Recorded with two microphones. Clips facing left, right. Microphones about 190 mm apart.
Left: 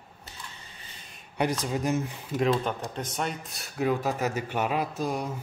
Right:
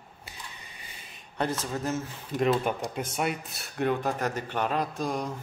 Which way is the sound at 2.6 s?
10° right (ahead or behind).